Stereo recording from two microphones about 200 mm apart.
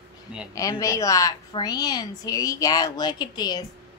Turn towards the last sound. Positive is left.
turn(degrees=20)  # may be behind; listen again after turning